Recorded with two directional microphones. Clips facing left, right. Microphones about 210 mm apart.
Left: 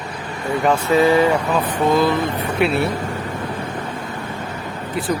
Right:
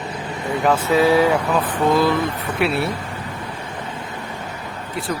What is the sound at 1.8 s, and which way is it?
Speech, centre (ahead or behind).